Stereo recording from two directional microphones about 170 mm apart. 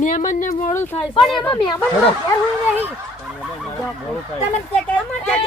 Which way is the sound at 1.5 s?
25° left (ahead or behind).